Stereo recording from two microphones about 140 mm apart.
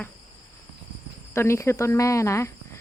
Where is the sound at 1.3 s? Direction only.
20° left (ahead or behind).